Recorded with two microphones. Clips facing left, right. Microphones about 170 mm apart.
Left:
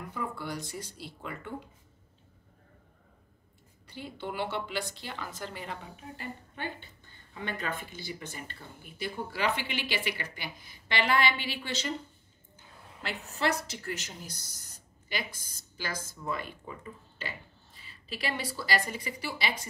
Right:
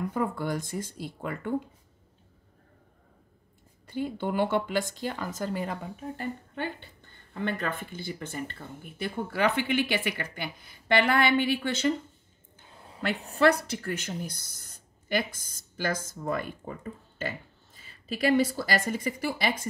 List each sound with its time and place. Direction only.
0.1 s speech: 50° right (ahead or behind)
3.8 s speech: 50° right (ahead or behind)
7.3 s speech: 50° right (ahead or behind)
13.3 s speech: 55° right (ahead or behind)